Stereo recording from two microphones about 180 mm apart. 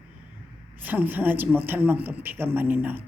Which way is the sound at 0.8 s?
10° right (ahead or behind).